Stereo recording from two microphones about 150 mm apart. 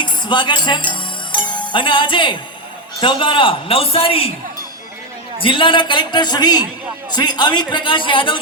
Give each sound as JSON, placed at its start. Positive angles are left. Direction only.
{"t": 0.0, "sound": "music", "side_deg": 30}
{"t": 1.5, "sound": "a man's voice", "side_deg": 30}
{"t": 5.4, "sound": "a man's voice", "side_deg": 35}